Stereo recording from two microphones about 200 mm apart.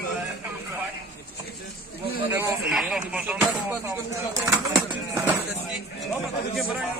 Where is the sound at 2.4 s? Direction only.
Centre (ahead or behind).